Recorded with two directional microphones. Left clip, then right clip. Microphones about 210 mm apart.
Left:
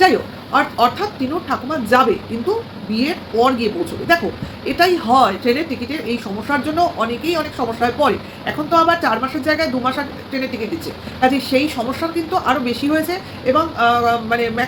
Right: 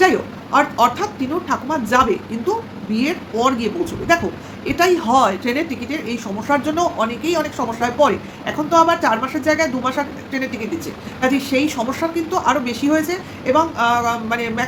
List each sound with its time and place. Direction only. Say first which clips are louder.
0.5 s speech: even; 5° right (ahead or behind)
11.2 s speech: left 2 dB; 10° right (ahead or behind)